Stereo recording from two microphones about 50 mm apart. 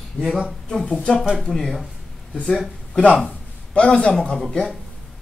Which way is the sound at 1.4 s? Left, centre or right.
Centre.